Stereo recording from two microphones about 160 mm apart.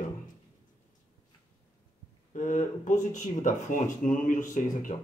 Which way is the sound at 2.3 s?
55° left (ahead or behind).